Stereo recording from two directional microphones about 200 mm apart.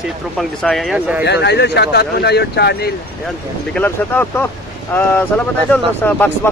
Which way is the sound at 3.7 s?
10° left (ahead or behind).